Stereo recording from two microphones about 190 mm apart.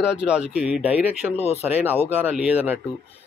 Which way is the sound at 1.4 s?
35° left (ahead or behind).